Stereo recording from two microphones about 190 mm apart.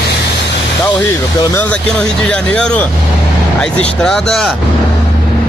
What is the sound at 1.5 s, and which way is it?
Speech, 5° left (ahead or behind).